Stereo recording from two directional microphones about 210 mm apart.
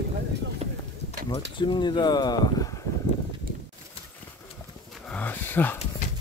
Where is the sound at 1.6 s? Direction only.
20° left (ahead or behind).